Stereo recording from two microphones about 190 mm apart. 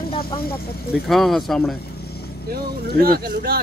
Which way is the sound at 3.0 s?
50° right (ahead or behind).